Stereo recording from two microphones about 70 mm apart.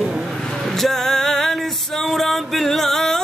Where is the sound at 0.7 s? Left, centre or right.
Centre.